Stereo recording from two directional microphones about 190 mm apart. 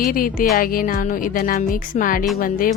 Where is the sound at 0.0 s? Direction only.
50° left (ahead or behind).